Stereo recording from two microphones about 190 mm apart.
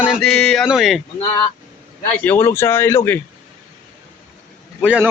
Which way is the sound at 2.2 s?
10° left (ahead or behind).